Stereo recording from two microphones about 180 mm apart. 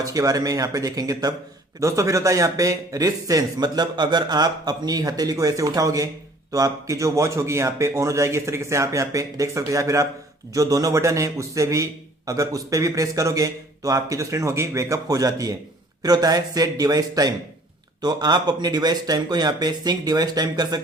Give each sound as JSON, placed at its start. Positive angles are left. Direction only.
{"t": 0.0, "sound": "a man's voice", "side_deg": -20}